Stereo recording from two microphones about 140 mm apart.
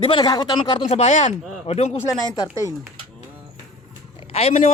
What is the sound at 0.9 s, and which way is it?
Speech, 55° left (ahead or behind).